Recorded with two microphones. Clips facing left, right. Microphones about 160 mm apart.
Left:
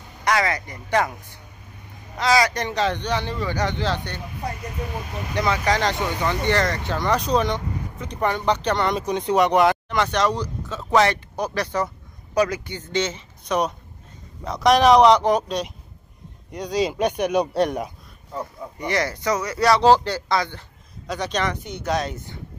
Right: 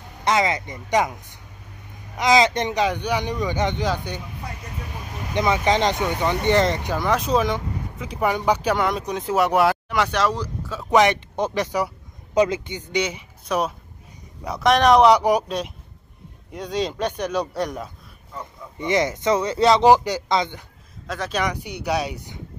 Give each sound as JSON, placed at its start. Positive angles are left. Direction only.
{"t": 0.2, "sound": "speech", "side_deg": -20}
{"t": 5.3, "sound": "speech", "side_deg": -20}
{"t": 17.0, "sound": "speech", "side_deg": 15}
{"t": 18.8, "sound": "speech", "side_deg": -20}
{"t": 21.1, "sound": "speech", "side_deg": -5}